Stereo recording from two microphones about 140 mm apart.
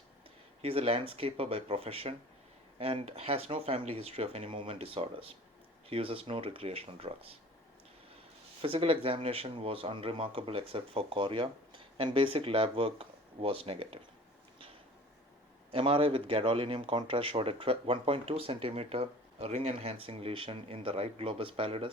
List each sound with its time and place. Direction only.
0.6 s speech: 40° right (ahead or behind)
8.6 s speech: 40° right (ahead or behind)
15.7 s speech: 40° right (ahead or behind)